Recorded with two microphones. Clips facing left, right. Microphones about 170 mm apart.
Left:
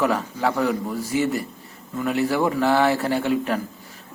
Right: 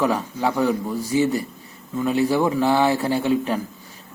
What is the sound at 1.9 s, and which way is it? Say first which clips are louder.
Speech: right 2 dB; 15° right (ahead or behind).